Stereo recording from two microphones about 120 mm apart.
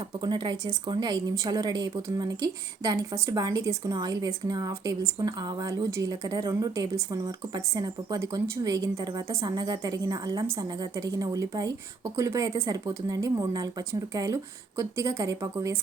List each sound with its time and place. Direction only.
0.2 s a woman's voice: 40° right (ahead or behind)